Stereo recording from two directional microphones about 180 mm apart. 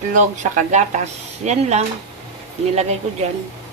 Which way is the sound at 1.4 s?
40° right (ahead or behind).